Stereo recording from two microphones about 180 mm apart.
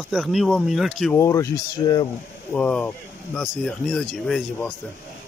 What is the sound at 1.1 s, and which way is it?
Speech, 15° left (ahead or behind).